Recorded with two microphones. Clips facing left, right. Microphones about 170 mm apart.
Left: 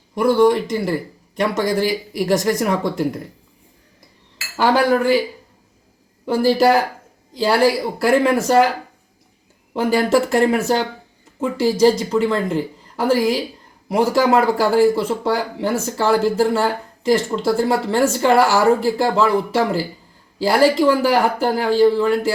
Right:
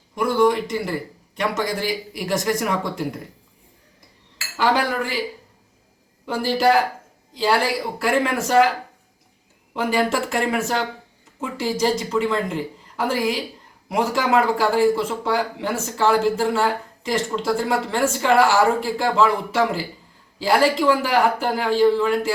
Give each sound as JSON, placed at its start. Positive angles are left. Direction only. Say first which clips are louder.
{"t": 0.2, "sound": "a man's voice", "louder": "left 4 dB", "side_deg": 35}
{"t": 6.2, "sound": "a man's voice", "louder": "left 4 dB", "side_deg": 40}
{"t": 9.7, "sound": "a man's voice", "louder": "left 5 dB", "side_deg": 40}